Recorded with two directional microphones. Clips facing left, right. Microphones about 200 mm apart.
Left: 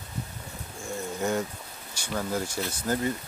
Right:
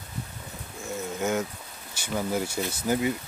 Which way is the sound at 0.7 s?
Centre (ahead or behind).